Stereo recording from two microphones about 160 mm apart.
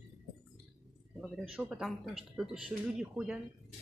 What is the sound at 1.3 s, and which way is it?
Speech, 5° right (ahead or behind).